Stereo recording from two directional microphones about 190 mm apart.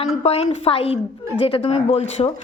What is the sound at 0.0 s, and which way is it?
Speech, 30° left (ahead or behind).